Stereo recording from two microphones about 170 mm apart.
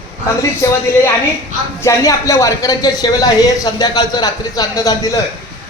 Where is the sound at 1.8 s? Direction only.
20° left (ahead or behind).